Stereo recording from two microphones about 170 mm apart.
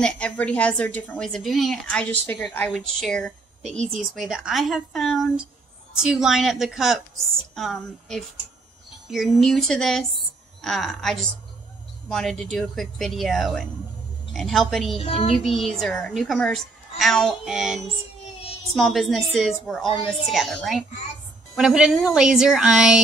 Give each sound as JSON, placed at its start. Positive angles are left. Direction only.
{"t": 0.0, "sound": "a woman's voice", "side_deg": 5}
{"t": 15.0, "sound": "speech", "side_deg": 35}
{"t": 15.3, "sound": "a woman's voice", "side_deg": 0}